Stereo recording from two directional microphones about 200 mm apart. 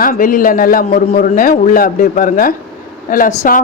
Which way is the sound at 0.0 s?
45° left (ahead or behind).